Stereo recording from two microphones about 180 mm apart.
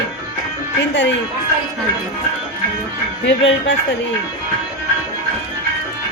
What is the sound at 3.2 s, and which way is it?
Speech, 90° left.